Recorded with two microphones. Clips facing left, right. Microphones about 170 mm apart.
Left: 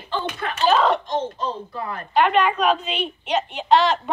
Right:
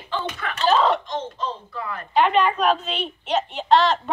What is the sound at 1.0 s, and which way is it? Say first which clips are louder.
Speech: left 3 dB; 45° left (ahead or behind).